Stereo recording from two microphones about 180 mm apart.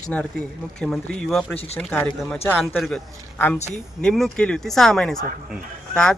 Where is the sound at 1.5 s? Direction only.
35° left (ahead or behind).